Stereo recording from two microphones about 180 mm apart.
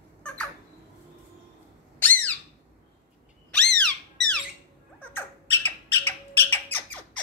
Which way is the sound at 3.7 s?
5° left (ahead or behind).